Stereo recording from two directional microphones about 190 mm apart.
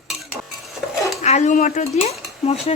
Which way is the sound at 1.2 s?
35° left (ahead or behind).